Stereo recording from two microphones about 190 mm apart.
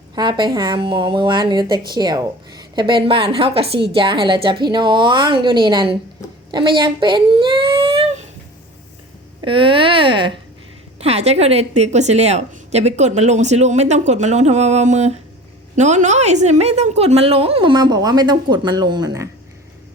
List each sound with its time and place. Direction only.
0.2 s a woman's voice: 25° right (ahead or behind)
6.5 s a sound: 25° right (ahead or behind)
9.4 s a woman's voice: 25° right (ahead or behind)